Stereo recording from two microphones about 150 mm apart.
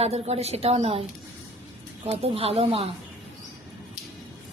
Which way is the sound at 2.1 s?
40° right (ahead or behind).